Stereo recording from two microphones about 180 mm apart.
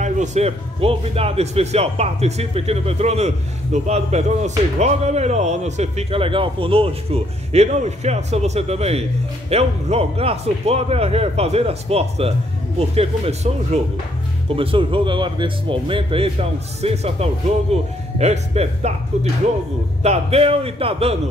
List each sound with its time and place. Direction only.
0.0 s a man's voice: 40° right (ahead or behind)
20.0 s a man's voice: 35° right (ahead or behind)